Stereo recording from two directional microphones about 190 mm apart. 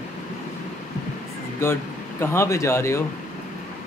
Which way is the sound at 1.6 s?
15° left (ahead or behind).